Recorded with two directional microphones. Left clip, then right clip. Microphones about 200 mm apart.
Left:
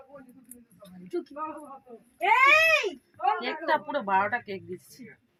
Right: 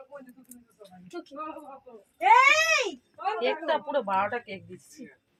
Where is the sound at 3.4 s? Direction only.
25° right (ahead or behind).